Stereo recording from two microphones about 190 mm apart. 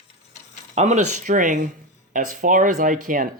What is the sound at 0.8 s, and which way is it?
Speech, 35° right (ahead or behind).